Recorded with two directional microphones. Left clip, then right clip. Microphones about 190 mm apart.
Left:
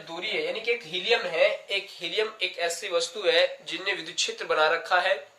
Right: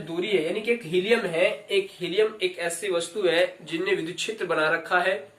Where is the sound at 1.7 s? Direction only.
25° left (ahead or behind).